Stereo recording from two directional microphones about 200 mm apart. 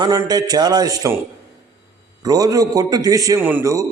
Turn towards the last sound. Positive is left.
turn(degrees=-15)  # may be behind; listen again after turning